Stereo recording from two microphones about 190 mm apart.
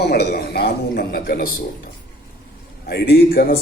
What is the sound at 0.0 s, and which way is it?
A man's voice, 60° left (ahead or behind).